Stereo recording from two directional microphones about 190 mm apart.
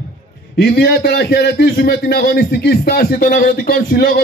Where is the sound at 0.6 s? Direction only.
55° left (ahead or behind).